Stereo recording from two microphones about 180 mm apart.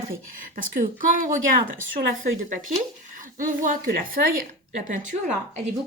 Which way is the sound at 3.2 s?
50° right (ahead or behind).